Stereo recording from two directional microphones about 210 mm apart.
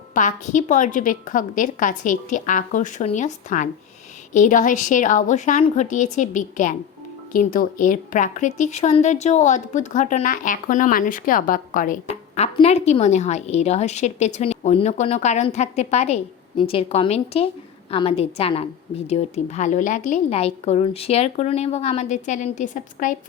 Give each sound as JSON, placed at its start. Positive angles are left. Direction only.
{"t": 0.1, "sound": "a woman's voice", "side_deg": 35}